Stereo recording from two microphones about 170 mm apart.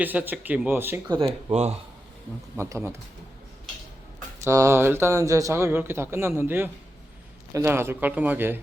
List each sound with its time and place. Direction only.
0.0 s speech: 10° right (ahead or behind)
1.0 s speech: 25° right (ahead or behind)
2.6 s speech: 15° right (ahead or behind)
4.4 s speech: 15° right (ahead or behind)